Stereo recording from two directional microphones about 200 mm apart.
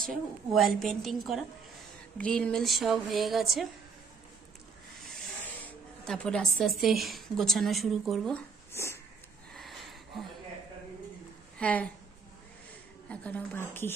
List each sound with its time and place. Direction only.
0.0 s a woman's voice: centre (ahead or behind)
5.6 s a woman's voice: 5° left (ahead or behind)
9.5 s a sound: centre (ahead or behind)
11.5 s speech: 5° left (ahead or behind)
13.1 s speech: 5° left (ahead or behind)